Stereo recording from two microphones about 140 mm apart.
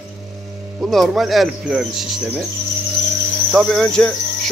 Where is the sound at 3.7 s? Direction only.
5° left (ahead or behind).